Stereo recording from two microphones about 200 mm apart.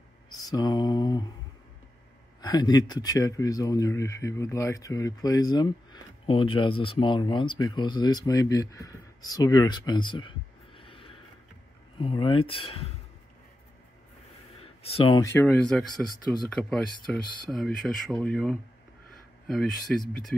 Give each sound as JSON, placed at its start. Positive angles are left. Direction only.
{"t": 0.5, "sound": "mantra", "side_deg": 20}
{"t": 2.4, "sound": "speech", "side_deg": 20}
{"t": 10.8, "sound": "a sound", "side_deg": 25}
{"t": 12.0, "sound": "speech", "side_deg": 25}
{"t": 14.6, "sound": "a sound", "side_deg": 30}
{"t": 15.2, "sound": "speech", "side_deg": 10}